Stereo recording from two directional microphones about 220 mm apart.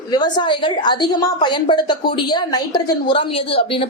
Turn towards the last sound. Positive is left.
turn(degrees=25)  # may be behind; listen again after turning